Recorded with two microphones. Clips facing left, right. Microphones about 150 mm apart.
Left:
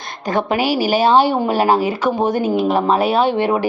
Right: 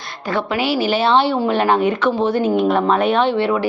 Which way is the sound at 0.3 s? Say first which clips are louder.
Left 2 dB; 45° left (ahead or behind).